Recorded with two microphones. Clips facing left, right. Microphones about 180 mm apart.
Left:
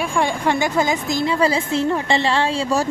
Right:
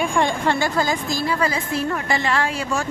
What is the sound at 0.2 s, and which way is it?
A woman's voice, 15° left (ahead or behind).